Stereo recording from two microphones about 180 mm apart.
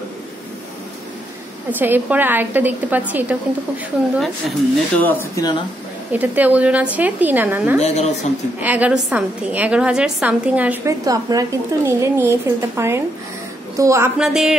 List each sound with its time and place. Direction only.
1.7 s a woman's voice: 10° right (ahead or behind)
5.0 s speech: 10° left (ahead or behind)
6.1 s a woman's voice: 10° right (ahead or behind)
7.8 s a woman's voice: 40° left (ahead or behind)
8.5 s a woman's voice: 10° right (ahead or behind)
11.1 s a woman's voice: 20° right (ahead or behind)
14.1 s a woman's voice: 5° right (ahead or behind)